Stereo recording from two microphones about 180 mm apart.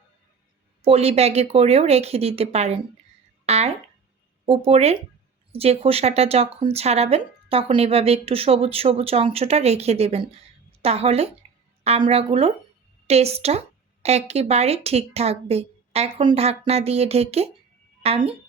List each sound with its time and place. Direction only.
0.8 s a woman's voice: 35° right (ahead or behind)